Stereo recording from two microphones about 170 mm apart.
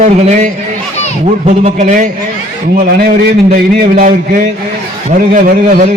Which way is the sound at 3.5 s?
55° right (ahead or behind).